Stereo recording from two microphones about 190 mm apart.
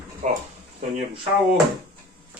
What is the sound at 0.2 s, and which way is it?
Speech, 35° right (ahead or behind).